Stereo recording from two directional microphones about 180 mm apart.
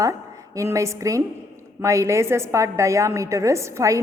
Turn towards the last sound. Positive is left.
turn(degrees=-15)  # may be behind; listen again after turning